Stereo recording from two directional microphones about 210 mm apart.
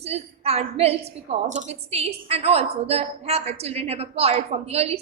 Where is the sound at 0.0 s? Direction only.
30° right (ahead or behind).